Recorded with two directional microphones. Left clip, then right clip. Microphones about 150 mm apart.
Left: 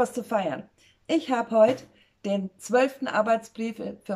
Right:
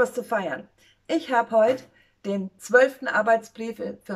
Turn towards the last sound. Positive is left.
turn(degrees=20)  # may be behind; listen again after turning